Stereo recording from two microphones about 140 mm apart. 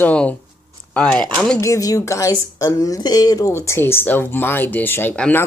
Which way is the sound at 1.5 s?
20° left (ahead or behind).